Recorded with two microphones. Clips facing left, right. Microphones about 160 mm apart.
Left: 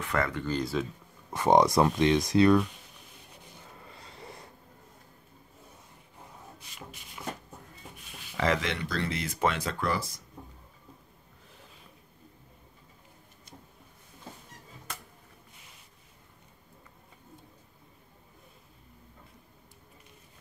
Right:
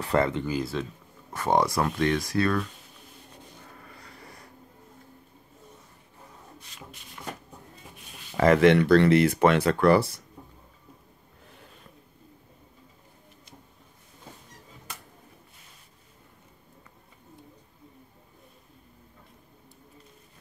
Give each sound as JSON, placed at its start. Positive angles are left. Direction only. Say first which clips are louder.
{"t": 0.0, "sound": "speech", "louder": "right 6 dB", "side_deg": -30}
{"t": 0.5, "sound": "speech", "louder": "right 1 dB", "side_deg": 0}
{"t": 1.3, "sound": "speech", "louder": "left 2 dB", "side_deg": 15}
{"t": 3.8, "sound": "a sound", "louder": "left 1 dB", "side_deg": 25}
{"t": 8.4, "sound": "speech", "louder": "right 11 dB", "side_deg": -50}